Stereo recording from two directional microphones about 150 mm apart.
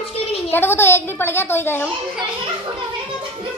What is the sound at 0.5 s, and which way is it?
A woman's voice, 15° left (ahead or behind).